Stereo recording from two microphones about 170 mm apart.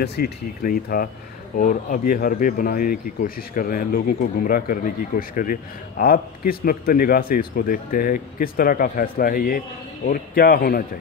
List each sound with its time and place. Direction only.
0.0 s speech: 65° left (ahead or behind)